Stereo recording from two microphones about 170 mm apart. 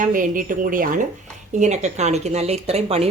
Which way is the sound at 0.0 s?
50° right (ahead or behind).